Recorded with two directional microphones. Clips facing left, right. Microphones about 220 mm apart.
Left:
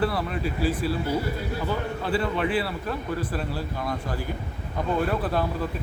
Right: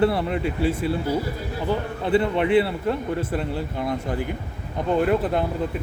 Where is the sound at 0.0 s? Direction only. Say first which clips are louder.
Right 5 dB; 25° right (ahead or behind).